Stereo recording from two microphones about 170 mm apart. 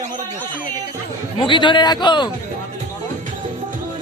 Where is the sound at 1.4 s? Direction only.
30° left (ahead or behind).